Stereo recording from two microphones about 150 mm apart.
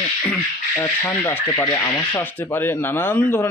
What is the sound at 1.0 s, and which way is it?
Speech, 10° left (ahead or behind).